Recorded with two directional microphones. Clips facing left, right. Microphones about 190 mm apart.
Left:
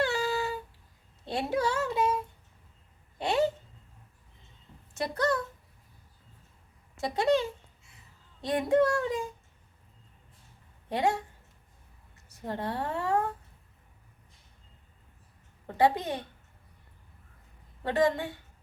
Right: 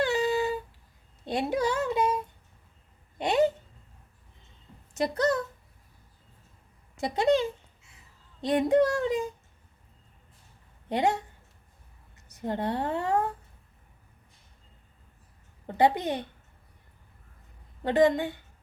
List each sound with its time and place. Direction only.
0.0 s a sound: 20° right (ahead or behind)
1.2 s speech: 15° right (ahead or behind)
4.9 s a child's voice: 20° right (ahead or behind)
6.9 s a child's voice: 20° right (ahead or behind)
10.8 s a woman's voice: 20° right (ahead or behind)
15.6 s a child's voice: 20° right (ahead or behind)
17.8 s a child's voice: 20° right (ahead or behind)